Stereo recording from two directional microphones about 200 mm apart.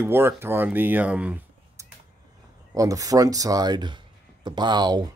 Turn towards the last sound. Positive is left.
turn(degrees=-20)  # may be behind; listen again after turning